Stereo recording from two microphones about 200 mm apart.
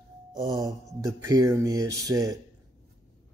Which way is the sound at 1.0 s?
20° right (ahead or behind).